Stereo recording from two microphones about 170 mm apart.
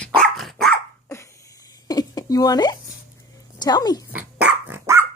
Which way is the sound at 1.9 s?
20° left (ahead or behind).